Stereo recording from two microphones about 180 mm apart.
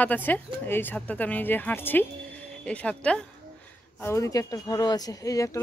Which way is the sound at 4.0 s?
15° left (ahead or behind).